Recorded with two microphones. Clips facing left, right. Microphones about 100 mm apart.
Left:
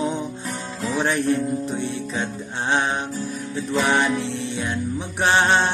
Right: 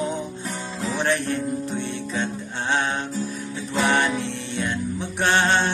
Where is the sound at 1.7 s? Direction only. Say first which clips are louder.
Left 1 dB; 10° left (ahead or behind).